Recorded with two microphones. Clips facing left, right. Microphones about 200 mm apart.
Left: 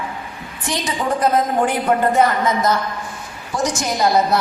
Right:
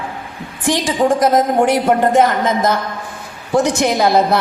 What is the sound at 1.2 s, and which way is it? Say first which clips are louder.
Speech: right 1 dB; 80° right.